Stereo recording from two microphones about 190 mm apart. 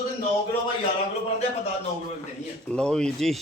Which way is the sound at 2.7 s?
5° left (ahead or behind).